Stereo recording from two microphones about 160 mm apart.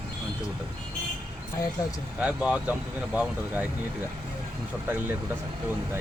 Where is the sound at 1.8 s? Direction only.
25° left (ahead or behind).